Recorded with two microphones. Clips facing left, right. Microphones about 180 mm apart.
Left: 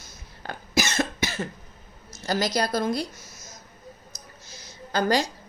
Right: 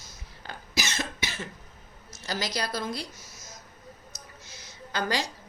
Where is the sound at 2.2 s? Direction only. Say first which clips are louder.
Left 7 dB; 45° left (ahead or behind).